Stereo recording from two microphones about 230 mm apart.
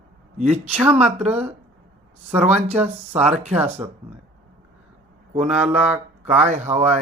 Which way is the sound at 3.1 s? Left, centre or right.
Centre.